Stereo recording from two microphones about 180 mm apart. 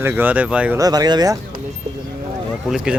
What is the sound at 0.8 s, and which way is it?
Speech, 20° right (ahead or behind).